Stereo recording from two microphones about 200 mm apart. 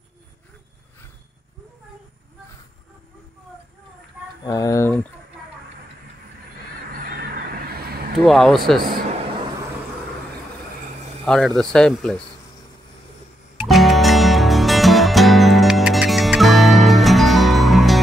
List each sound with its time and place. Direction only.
4.5 s speech: 15° left (ahead or behind)
6.9 s honk: 45° right (ahead or behind)
8.3 s speech: centre (ahead or behind)
11.2 s speech: 5° left (ahead or behind)
13.7 s music: centre (ahead or behind)